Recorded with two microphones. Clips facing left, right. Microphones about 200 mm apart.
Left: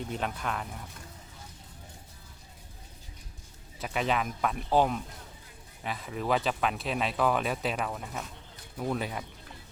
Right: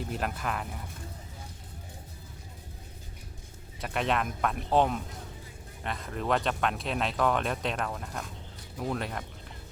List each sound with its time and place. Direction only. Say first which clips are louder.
0.0 s speech: even; 5° right (ahead or behind)
3.8 s speech: even; centre (ahead or behind)